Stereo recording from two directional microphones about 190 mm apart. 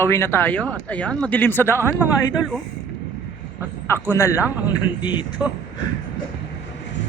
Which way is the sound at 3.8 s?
15° left (ahead or behind).